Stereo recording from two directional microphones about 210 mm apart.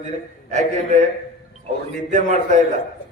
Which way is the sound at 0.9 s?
35° right (ahead or behind).